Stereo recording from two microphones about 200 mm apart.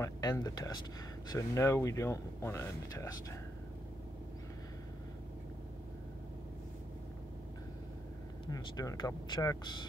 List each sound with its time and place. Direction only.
0.0 s speech: 15° left (ahead or behind)
8.5 s speech: 20° left (ahead or behind)